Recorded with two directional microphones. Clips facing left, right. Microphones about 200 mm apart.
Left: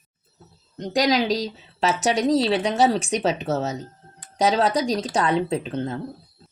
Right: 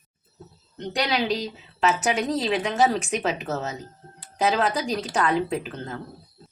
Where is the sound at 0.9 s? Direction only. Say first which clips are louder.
Left 4 dB; 40° left (ahead or behind).